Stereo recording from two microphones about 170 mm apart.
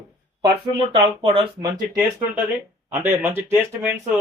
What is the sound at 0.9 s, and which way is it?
Speech, 35° right (ahead or behind).